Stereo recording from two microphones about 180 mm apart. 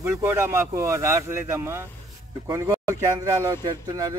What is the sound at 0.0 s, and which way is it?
Speech, 15° right (ahead or behind).